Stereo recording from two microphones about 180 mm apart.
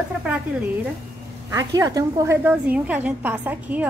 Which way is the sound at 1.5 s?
20° right (ahead or behind).